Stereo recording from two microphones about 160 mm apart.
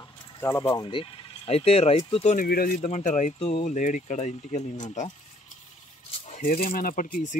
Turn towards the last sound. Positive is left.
turn(degrees=60)  # may be behind; listen again after turning